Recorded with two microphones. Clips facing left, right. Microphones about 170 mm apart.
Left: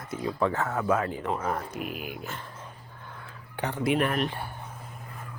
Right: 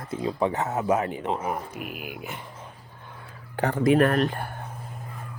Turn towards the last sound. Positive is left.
turn(degrees=-50)  # may be behind; listen again after turning